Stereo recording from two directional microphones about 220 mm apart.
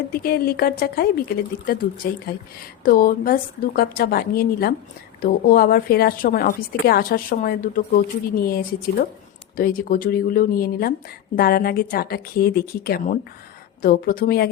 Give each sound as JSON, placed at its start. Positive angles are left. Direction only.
{"t": 0.1, "sound": "a woman's voice", "side_deg": 45}